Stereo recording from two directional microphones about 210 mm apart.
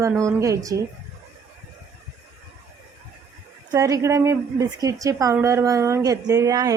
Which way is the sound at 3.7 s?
15° right (ahead or behind).